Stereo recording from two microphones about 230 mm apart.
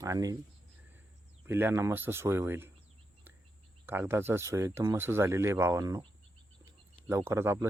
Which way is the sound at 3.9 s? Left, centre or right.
Centre.